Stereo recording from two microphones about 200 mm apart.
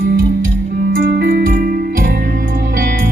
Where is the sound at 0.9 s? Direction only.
50° right (ahead or behind).